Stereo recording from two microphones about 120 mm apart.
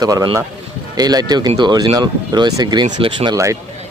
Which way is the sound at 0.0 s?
30° right (ahead or behind).